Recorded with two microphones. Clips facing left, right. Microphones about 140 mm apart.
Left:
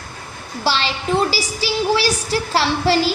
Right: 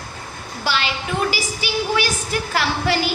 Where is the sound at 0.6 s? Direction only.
35° left (ahead or behind).